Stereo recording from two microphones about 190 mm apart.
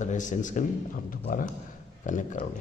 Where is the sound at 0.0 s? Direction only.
40° left (ahead or behind).